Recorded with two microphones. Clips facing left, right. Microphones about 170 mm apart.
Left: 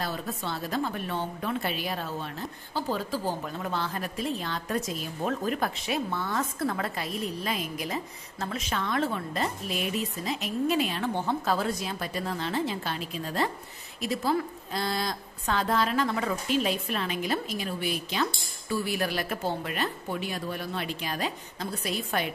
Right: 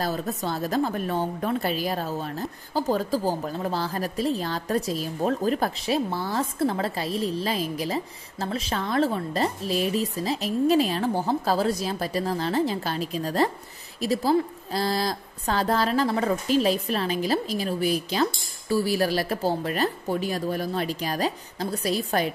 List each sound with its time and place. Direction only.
0.0 s a woman's voice: 40° right (ahead or behind)